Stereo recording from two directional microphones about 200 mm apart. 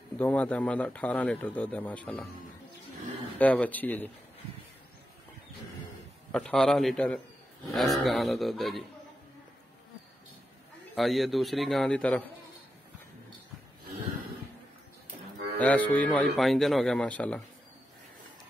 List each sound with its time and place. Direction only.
0.2 s speech: 10° left (ahead or behind)
3.3 s speech: 5° left (ahead or behind)
6.3 s a man's voice: 5° left (ahead or behind)
11.0 s a man's voice: centre (ahead or behind)
15.6 s a man's voice: 5° left (ahead or behind)